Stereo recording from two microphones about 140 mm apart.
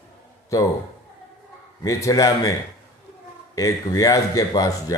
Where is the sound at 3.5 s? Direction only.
25° left (ahead or behind).